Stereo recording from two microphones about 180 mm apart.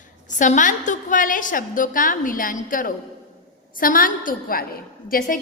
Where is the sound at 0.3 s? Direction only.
45° left (ahead or behind).